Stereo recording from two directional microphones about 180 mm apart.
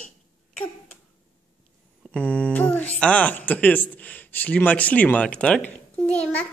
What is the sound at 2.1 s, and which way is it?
Speech, 5° left (ahead or behind).